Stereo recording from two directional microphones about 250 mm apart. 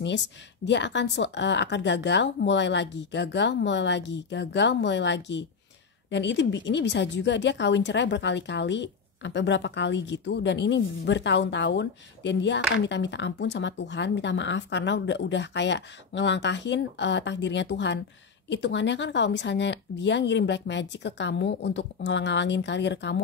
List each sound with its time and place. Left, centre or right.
0.7 s a woman's voice: left